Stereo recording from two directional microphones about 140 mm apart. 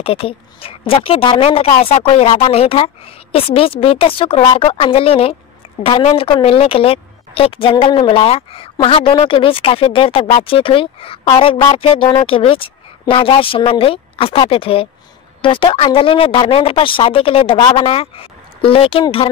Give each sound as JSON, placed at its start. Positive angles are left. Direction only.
{"t": 0.0, "sound": "a woman's voice", "side_deg": 45}
{"t": 17.6, "sound": "speech", "side_deg": 30}
{"t": 17.8, "sound": "speech", "side_deg": 45}